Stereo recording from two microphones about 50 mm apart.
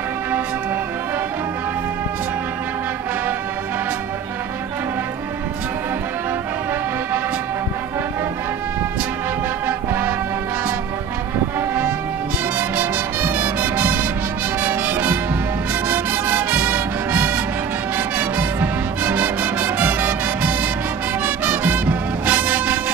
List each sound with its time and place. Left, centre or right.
9.7 s music: right
12.5 s music: right